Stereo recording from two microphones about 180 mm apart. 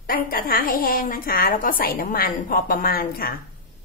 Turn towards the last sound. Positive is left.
turn(degrees=55)  # may be behind; listen again after turning